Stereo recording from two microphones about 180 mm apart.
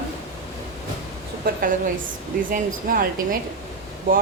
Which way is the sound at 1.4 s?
50° right (ahead or behind).